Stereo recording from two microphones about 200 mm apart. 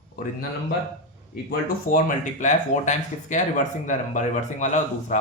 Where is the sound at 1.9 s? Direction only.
40° left (ahead or behind).